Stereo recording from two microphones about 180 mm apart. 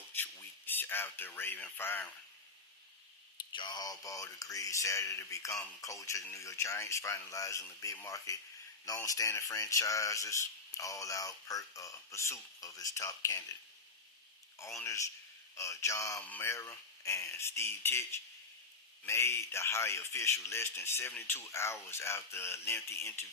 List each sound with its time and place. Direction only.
0.1 s a sound: 10° left (ahead or behind)
3.5 s speech: 25° left (ahead or behind)
14.8 s speech: 15° left (ahead or behind)